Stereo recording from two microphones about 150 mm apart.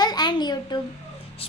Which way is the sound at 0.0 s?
30° left (ahead or behind).